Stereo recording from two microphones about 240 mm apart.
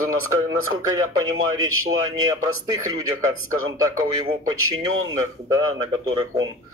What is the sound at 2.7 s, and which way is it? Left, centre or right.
Speech, centre.